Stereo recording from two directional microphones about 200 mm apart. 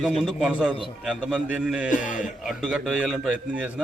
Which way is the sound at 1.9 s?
40° left (ahead or behind).